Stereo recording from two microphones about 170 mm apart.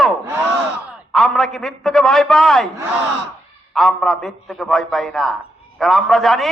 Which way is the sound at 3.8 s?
Centre (ahead or behind).